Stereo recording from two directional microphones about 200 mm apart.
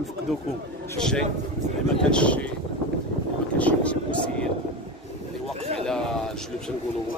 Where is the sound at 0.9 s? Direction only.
5° left (ahead or behind).